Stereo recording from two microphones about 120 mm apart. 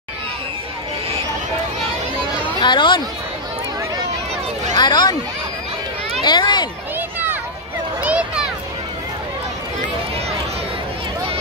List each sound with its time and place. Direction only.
2.6 s speech: 40° left (ahead or behind)
4.7 s speech: 35° left (ahead or behind)
6.2 s speech: 35° left (ahead or behind)
7.0 s a sound: 15° right (ahead or behind)